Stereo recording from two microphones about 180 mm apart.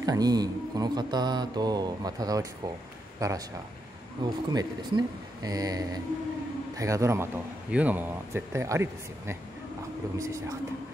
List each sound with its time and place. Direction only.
0.0 s mantra: 20° right (ahead or behind)
3.2 s speech: 20° right (ahead or behind)
4.2 s mantra: 20° right (ahead or behind)
6.8 s speech: 15° right (ahead or behind)